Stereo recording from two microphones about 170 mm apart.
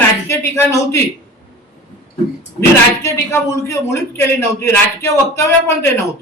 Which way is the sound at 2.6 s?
15° left (ahead or behind).